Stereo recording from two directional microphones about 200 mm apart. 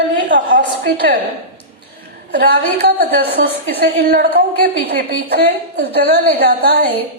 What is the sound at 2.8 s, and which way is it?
A woman's voice, 55° right (ahead or behind).